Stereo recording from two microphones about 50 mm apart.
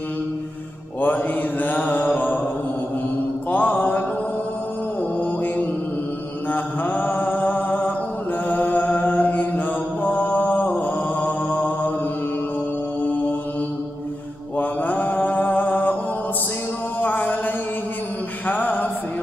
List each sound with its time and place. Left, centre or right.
1.0 s mantra: left
3.4 s mantra: left
6.5 s mantra: left
8.5 s music: left
10.0 s mantra: left
14.6 s mantra: left
17.0 s music: left
18.5 s music: left